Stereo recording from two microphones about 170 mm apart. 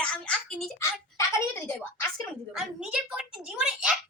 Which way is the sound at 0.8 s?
15° left (ahead or behind).